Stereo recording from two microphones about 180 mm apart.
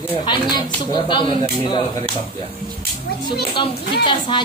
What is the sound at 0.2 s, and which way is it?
A woman's voice, 25° left (ahead or behind).